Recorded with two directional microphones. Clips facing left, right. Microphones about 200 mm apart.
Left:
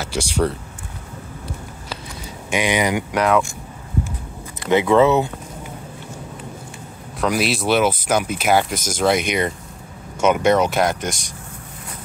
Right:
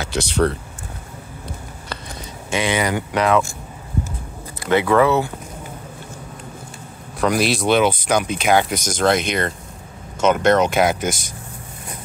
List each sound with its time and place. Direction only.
0.0 s speech: 10° left (ahead or behind)
2.5 s speech: 15° left (ahead or behind)
4.6 s speech: 20° left (ahead or behind)
7.2 s speech: 5° left (ahead or behind)
10.8 s speech: 5° right (ahead or behind)